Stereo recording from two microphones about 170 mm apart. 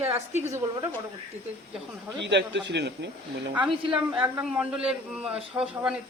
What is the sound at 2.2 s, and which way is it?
Speech, 90° right.